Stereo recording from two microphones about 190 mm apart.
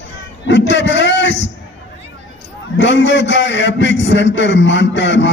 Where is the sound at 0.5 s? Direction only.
70° left (ahead or behind).